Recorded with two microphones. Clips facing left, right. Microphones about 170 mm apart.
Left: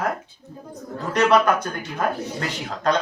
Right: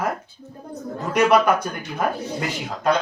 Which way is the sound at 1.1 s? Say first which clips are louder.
Right 1 dB; 10° right (ahead or behind).